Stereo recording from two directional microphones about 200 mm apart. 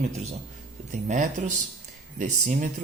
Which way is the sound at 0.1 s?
35° right (ahead or behind).